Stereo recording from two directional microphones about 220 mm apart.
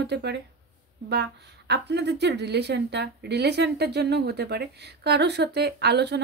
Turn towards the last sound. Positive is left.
turn(degrees=-50)  # may be behind; listen again after turning